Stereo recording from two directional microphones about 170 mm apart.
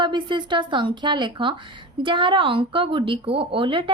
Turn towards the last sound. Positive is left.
turn(degrees=-30)  # may be behind; listen again after turning